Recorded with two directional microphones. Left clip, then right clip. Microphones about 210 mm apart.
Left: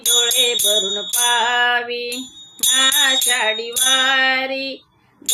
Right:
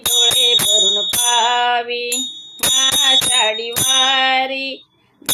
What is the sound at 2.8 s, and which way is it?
Music, 15° left (ahead or behind).